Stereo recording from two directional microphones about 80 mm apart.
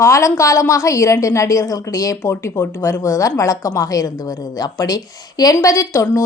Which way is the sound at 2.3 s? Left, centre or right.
Left.